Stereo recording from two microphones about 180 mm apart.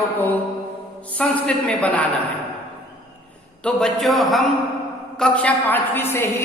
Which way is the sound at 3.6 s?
5° left (ahead or behind).